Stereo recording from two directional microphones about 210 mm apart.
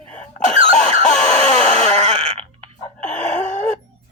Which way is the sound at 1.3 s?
35° left (ahead or behind).